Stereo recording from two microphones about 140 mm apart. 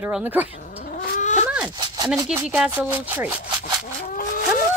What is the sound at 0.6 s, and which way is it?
Cat, 65° left (ahead or behind).